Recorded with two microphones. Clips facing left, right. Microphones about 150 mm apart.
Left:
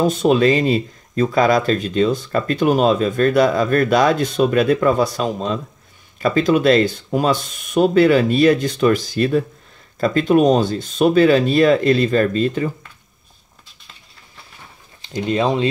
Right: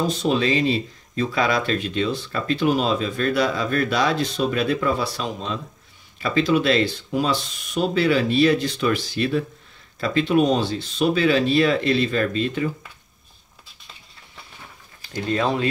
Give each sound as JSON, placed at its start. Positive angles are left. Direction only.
{"t": 0.0, "sound": "speech", "side_deg": 50}
{"t": 15.0, "sound": "speech", "side_deg": 20}